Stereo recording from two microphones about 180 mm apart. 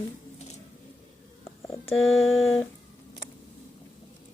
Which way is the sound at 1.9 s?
90° left.